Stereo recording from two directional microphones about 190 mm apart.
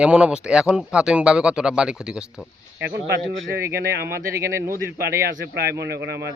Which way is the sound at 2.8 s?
60° right (ahead or behind).